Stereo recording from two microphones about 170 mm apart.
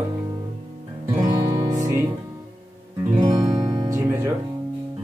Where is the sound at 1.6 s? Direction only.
20° right (ahead or behind).